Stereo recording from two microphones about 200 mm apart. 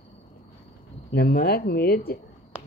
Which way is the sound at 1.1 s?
50° left (ahead or behind).